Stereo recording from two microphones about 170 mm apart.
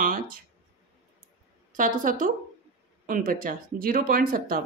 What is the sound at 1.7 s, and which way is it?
A woman's voice, 50° right (ahead or behind).